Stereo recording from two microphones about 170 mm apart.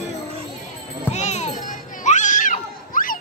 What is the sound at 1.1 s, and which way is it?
Children playing, 40° left (ahead or behind).